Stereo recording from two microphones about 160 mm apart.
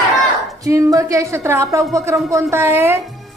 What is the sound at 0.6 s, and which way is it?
A woman's voice, 20° right (ahead or behind).